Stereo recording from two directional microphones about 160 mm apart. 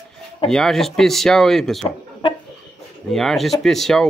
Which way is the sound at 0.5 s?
Centre (ahead or behind).